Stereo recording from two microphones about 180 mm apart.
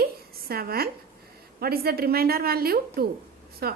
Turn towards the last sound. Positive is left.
turn(degrees=-60)  # may be behind; listen again after turning